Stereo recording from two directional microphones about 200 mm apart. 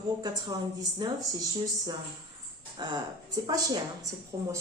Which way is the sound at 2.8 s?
20° right (ahead or behind).